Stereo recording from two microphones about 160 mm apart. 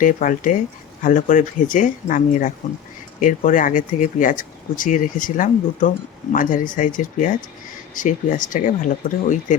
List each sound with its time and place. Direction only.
0.0 s speech: 55° left (ahead or behind)